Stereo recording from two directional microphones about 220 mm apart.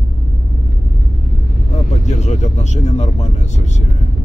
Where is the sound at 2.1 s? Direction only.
30° left (ahead or behind).